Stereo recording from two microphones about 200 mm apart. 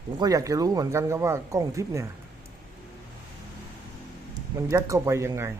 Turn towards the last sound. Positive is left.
turn(degrees=-15)  # may be behind; listen again after turning